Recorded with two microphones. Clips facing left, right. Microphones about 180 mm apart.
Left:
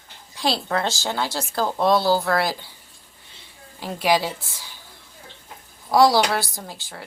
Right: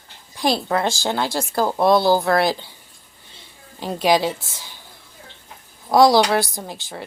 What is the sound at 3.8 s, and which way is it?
Speech, 20° right (ahead or behind).